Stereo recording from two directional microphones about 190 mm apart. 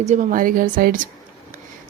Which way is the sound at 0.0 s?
40° right (ahead or behind).